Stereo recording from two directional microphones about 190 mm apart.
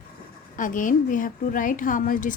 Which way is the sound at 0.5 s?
45° left (ahead or behind).